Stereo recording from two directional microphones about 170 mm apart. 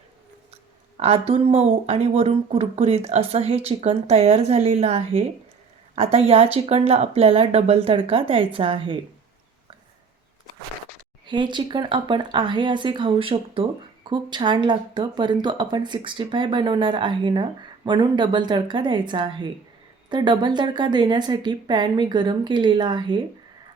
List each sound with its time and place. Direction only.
0.9 s speech: 40° right (ahead or behind)
11.3 s speech: 25° right (ahead or behind)